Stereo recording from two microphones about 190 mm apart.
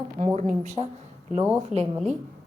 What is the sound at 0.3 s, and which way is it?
Speech, 40° right (ahead or behind).